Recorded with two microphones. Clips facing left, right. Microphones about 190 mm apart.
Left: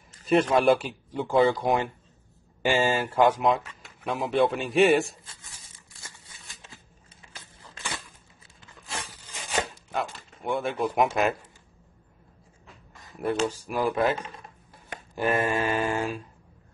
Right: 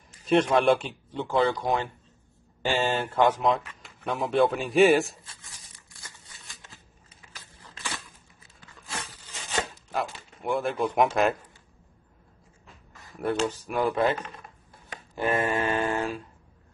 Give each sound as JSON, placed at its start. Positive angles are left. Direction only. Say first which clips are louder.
{"t": 0.3, "sound": "speech", "louder": "even", "side_deg": 0}
{"t": 8.9, "sound": "a sound", "louder": "left 1 dB", "side_deg": 10}
{"t": 9.8, "sound": "speech", "louder": "even", "side_deg": 0}
{"t": 13.2, "sound": "speech", "louder": "even", "side_deg": 10}